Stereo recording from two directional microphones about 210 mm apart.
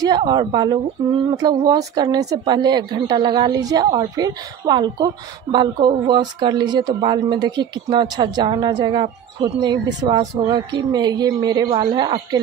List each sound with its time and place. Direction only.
0.0 s a woman's voice: 20° right (ahead or behind)